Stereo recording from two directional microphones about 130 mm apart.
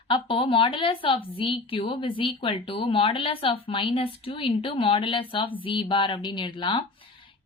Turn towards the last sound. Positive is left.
turn(degrees=40)  # may be behind; listen again after turning